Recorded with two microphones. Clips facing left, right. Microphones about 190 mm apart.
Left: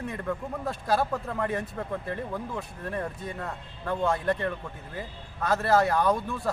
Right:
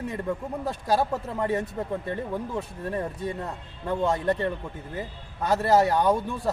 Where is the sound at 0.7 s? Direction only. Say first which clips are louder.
Right 2 dB; 20° right (ahead or behind).